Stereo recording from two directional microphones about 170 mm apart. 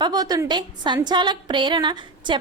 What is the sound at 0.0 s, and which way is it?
A woman's voice, 25° right (ahead or behind).